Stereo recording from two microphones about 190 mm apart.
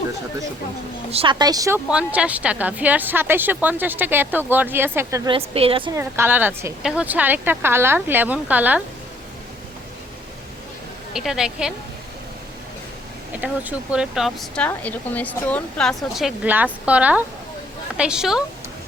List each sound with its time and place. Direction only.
1.1 s speech: 25° right (ahead or behind)
1.9 s speech: 5° right (ahead or behind)
5.3 s speech: 30° right (ahead or behind)
5.9 s speech: 15° right (ahead or behind)
11.1 s speech: centre (ahead or behind)
13.4 s speech: 5° right (ahead or behind)